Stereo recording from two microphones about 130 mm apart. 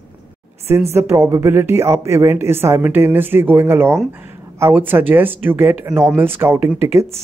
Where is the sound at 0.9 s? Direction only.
20° right (ahead or behind).